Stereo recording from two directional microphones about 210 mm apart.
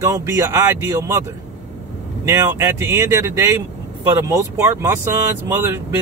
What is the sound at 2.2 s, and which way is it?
A man's voice, 15° right (ahead or behind).